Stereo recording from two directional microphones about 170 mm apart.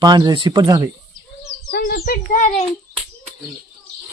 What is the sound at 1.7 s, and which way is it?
Bird, 65° left (ahead or behind).